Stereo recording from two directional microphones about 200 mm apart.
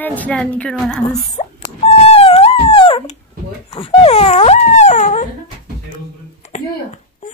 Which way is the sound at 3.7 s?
30° left (ahead or behind).